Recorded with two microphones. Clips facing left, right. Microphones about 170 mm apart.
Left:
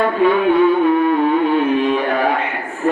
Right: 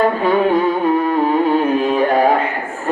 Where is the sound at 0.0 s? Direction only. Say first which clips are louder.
Even; 40° right (ahead or behind).